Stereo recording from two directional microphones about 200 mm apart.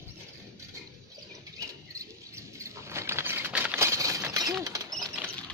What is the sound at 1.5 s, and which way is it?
Patter, 15° right (ahead or behind).